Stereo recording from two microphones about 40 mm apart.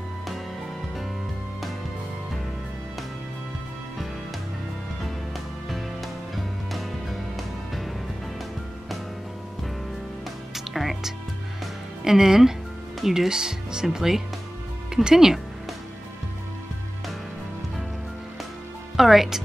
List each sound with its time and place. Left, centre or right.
5.7 s music: centre
10.5 s music: centre
12.0 s speech: centre
13.3 s speech: centre
18.9 s speech: centre